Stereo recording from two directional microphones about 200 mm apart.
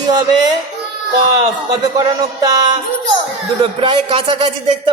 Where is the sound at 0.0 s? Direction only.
20° right (ahead or behind).